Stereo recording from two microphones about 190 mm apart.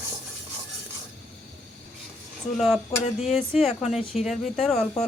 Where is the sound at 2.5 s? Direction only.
Centre (ahead or behind).